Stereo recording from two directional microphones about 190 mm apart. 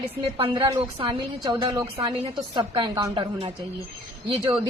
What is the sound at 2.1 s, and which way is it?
A woman's voice, 30° right (ahead or behind).